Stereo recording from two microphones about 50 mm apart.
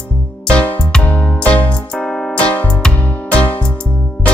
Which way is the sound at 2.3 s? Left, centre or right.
Left.